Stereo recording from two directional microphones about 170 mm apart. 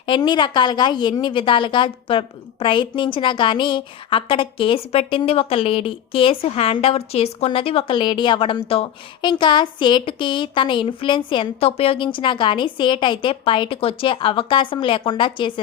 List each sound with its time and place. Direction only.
0.0 s a woman's voice: 30° left (ahead or behind)